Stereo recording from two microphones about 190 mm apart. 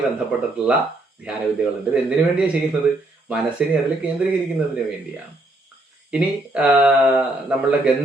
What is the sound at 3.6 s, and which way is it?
Speech, 5° right (ahead or behind).